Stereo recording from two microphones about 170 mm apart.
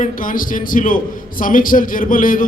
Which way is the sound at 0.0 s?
55° left (ahead or behind).